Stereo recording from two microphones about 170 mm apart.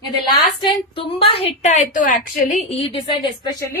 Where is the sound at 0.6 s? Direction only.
30° left (ahead or behind).